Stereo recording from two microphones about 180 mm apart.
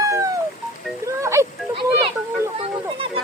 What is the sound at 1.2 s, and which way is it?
Speech, 15° right (ahead or behind).